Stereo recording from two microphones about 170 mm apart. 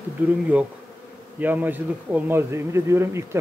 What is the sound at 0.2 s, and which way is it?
Speech, 10° right (ahead or behind).